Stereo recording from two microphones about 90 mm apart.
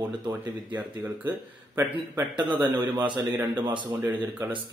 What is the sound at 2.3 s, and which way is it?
Speech, 60° right (ahead or behind).